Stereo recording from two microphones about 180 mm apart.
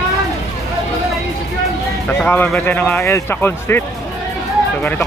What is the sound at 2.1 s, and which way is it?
A man's voice, 10° left (ahead or behind).